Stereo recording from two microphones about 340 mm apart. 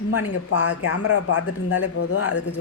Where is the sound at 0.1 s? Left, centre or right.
Left.